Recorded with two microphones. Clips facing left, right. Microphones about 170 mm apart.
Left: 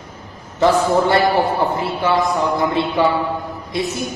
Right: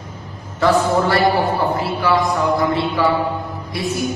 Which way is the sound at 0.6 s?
20° left (ahead or behind).